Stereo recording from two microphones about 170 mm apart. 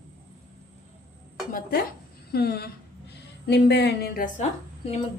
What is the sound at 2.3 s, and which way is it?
Speech, 70° left (ahead or behind).